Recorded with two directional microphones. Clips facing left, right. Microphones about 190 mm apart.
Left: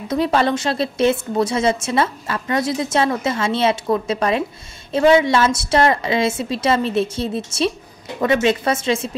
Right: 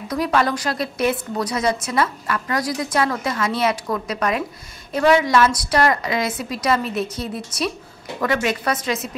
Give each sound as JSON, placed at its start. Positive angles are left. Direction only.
{"t": 0.1, "sound": "a woman's voice", "side_deg": 25}